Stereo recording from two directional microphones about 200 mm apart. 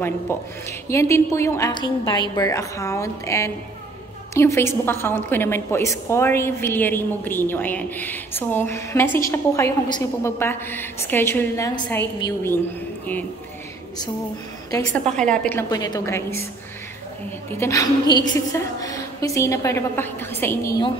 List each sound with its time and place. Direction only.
0.3 s a woman's voice: 10° left (ahead or behind)
14.7 s a woman's voice: 15° left (ahead or behind)
15.0 s a woman's voice: 5° left (ahead or behind)
15.7 s a woman's voice: 20° left (ahead or behind)
17.5 s a woman's voice: 15° left (ahead or behind)